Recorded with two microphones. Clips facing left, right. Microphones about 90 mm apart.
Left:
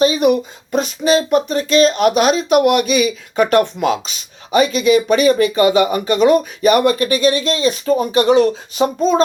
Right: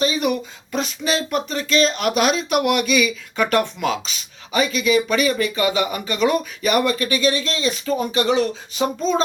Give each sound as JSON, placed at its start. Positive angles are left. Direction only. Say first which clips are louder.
{"t": 0.0, "sound": "speech", "louder": "left 7 dB", "side_deg": 50}